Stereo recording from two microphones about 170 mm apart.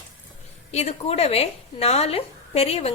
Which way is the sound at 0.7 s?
40° left (ahead or behind).